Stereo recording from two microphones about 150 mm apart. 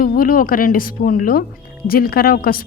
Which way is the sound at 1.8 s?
90° left.